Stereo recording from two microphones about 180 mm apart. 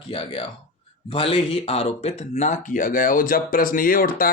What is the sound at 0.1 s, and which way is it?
Speech, 30° left (ahead or behind).